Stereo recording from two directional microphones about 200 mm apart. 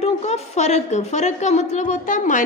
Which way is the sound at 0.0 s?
35° left (ahead or behind).